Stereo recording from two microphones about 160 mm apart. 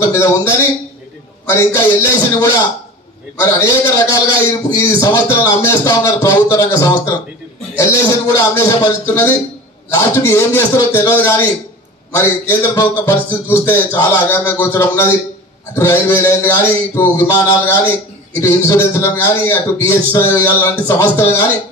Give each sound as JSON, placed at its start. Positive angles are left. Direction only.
{"t": 0.0, "sound": "a man's voice", "side_deg": 15}